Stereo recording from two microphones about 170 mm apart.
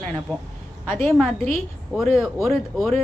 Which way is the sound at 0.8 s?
15° left (ahead or behind).